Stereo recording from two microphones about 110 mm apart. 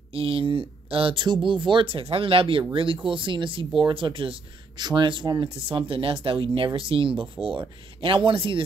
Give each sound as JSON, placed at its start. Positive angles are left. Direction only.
{"t": 0.1, "sound": "speech", "side_deg": -55}